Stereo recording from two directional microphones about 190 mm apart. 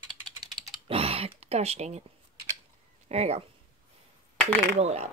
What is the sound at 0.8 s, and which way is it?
Speech, 30° right (ahead or behind).